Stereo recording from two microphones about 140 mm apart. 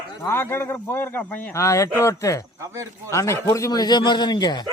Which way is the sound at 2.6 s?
20° right (ahead or behind).